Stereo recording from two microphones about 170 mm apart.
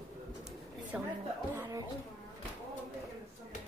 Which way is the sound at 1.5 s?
15° right (ahead or behind).